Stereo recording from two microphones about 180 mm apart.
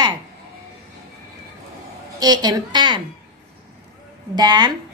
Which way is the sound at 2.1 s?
20° right (ahead or behind).